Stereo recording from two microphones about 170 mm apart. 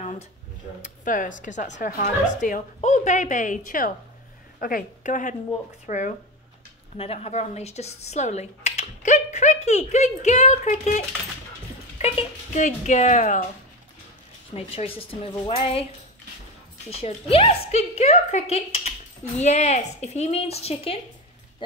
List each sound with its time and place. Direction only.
0.8 s a woman's voice: 50° left (ahead or behind)
14.5 s speech: 35° left (ahead or behind)
17.0 s speech: 35° left (ahead or behind)